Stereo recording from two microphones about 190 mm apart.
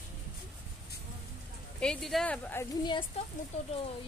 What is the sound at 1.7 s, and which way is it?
Speech, centre (ahead or behind).